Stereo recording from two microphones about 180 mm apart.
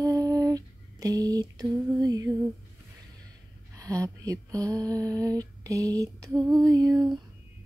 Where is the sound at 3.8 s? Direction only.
20° right (ahead or behind).